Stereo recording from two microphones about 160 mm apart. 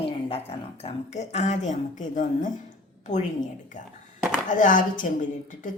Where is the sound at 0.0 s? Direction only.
40° left (ahead or behind).